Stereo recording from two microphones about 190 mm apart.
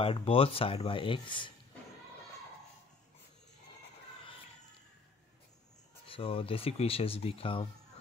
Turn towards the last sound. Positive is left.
turn(degrees=30)  # may be behind; listen again after turning